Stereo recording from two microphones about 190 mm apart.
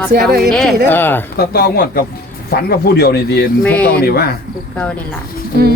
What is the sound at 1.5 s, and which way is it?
Speech, 55° left (ahead or behind).